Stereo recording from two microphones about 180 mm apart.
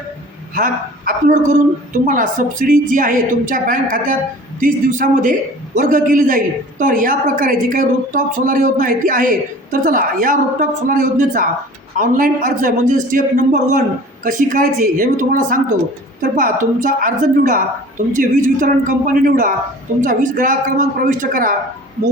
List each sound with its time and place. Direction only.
0.5 s a woman's voice: 50° right (ahead or behind)